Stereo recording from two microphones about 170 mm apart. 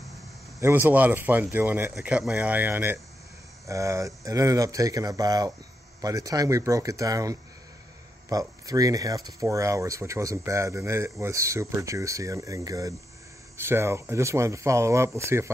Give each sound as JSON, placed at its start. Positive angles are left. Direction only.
{"t": 0.6, "sound": "speech", "side_deg": -15}